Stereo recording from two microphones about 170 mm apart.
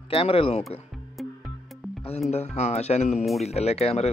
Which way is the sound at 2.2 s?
40° left (ahead or behind).